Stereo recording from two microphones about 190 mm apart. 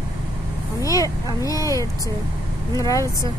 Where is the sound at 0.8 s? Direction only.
20° left (ahead or behind).